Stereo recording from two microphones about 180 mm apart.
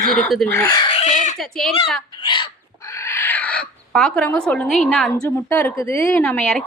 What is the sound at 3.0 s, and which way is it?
Speech, 15° left (ahead or behind).